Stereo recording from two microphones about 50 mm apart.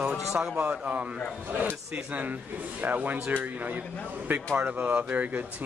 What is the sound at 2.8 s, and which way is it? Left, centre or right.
Speech, right.